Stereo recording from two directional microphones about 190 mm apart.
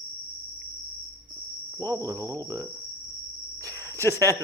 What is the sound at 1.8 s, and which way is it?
Speech, 15° right (ahead or behind).